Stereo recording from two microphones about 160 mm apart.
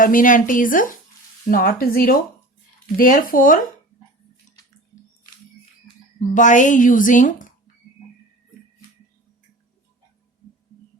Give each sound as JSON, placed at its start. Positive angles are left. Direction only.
{"t": 0.0, "sound": "speech", "side_deg": 55}
{"t": 6.1, "sound": "speech", "side_deg": 50}